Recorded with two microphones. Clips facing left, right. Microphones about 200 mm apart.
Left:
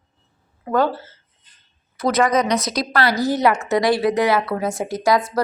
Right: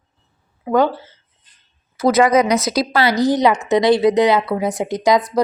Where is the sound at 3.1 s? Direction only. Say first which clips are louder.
Right 4 dB; 20° right (ahead or behind).